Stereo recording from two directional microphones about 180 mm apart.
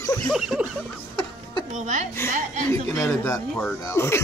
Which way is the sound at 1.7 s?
45° right (ahead or behind).